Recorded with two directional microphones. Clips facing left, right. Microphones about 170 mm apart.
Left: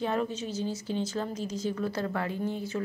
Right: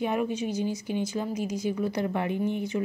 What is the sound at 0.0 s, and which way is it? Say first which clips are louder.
A woman's voice: right 3 dB; 15° right (ahead or behind).